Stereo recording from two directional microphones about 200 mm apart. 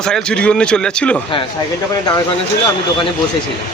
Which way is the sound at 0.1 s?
5° left (ahead or behind).